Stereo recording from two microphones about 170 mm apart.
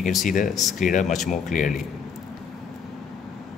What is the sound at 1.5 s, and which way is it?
Speech, 50° left (ahead or behind).